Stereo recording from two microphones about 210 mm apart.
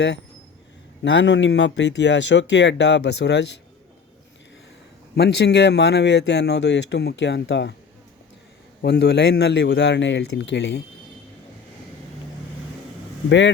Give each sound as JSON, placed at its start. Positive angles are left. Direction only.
{"t": 1.0, "sound": "speech", "side_deg": 55}
{"t": 5.1, "sound": "speech", "side_deg": 50}
{"t": 8.8, "sound": "speech", "side_deg": 55}